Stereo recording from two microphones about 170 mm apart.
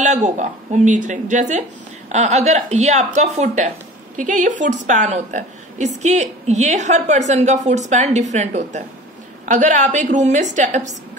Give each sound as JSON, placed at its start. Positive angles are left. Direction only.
{"t": 0.0, "sound": "a woman's voice", "side_deg": -45}